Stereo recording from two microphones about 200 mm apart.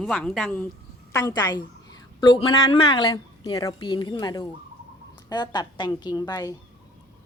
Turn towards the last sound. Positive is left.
turn(degrees=20)  # may be behind; listen again after turning